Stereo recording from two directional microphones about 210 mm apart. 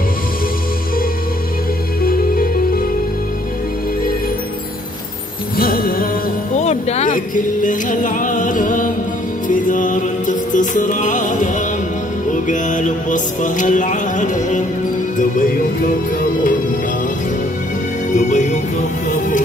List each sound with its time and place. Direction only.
2.0 s music: 45° left (ahead or behind)
5.6 s music: 45° left (ahead or behind)
6.6 s music: 30° left (ahead or behind)
18.1 s music: 35° left (ahead or behind)